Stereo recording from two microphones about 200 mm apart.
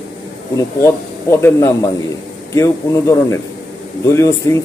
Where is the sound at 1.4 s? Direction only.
15° left (ahead or behind).